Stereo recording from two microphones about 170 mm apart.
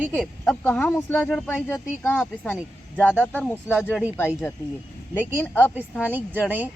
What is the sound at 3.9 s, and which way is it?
Speech, centre (ahead or behind).